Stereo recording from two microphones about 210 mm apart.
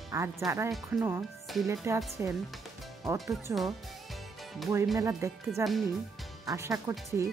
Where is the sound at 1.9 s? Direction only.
15° right (ahead or behind).